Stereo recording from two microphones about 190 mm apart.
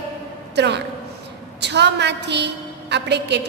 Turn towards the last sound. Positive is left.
turn(degrees=-65)  # may be behind; listen again after turning